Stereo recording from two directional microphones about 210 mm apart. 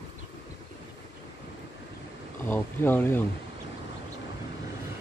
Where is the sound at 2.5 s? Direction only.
10° left (ahead or behind).